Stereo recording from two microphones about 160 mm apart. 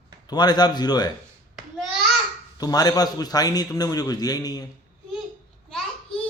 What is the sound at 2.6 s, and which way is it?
Speech, 25° left (ahead or behind).